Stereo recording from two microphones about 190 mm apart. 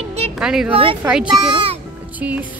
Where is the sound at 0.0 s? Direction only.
35° right (ahead or behind).